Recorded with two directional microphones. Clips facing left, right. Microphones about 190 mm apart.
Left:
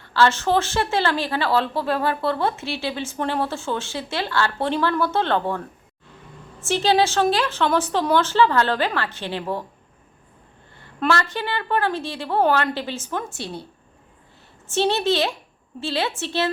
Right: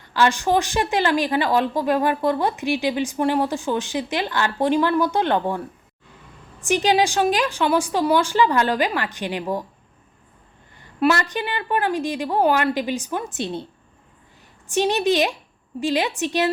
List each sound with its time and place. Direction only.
0.0 s speech: 15° right (ahead or behind)
10.8 s speech: 15° right (ahead or behind)
14.7 s speech: 15° right (ahead or behind)